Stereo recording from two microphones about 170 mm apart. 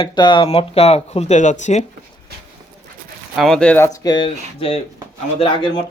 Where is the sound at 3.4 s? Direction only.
5° left (ahead or behind).